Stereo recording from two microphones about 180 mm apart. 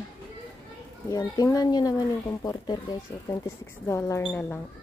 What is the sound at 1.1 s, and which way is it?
A woman's voice, 20° left (ahead or behind).